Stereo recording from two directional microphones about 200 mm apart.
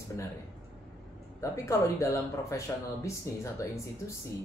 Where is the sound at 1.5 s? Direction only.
15° left (ahead or behind).